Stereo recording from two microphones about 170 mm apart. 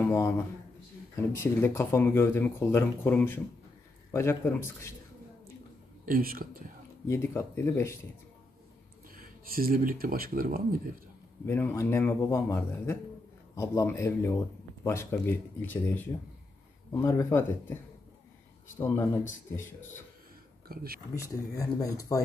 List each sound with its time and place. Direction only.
0.0 s speech: 15° left (ahead or behind)
1.3 s speech: 15° left (ahead or behind)
6.0 s speech: 60° right (ahead or behind)
7.1 s speech: 15° left (ahead or behind)
9.1 s speech: 60° right (ahead or behind)
11.4 s speech: 15° left (ahead or behind)
18.8 s speech: 15° left (ahead or behind)
20.6 s speech: 60° right (ahead or behind)
21.1 s speech: 20° left (ahead or behind)